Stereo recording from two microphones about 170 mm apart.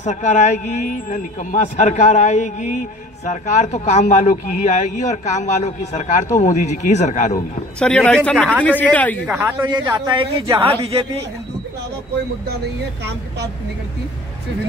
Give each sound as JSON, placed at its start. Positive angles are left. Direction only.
{"t": 0.0, "sound": "a man's voice", "side_deg": 45}
{"t": 7.8, "sound": "a man's voice", "side_deg": 5}
{"t": 9.3, "sound": "speech", "side_deg": -10}
{"t": 9.7, "sound": "a man's voice", "side_deg": -25}